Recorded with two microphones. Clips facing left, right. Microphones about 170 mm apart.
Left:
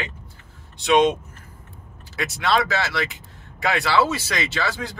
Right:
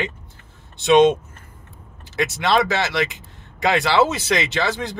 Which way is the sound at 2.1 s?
20° right (ahead or behind).